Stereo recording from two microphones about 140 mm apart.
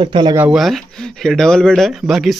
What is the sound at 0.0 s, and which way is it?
Speech, 35° right (ahead or behind).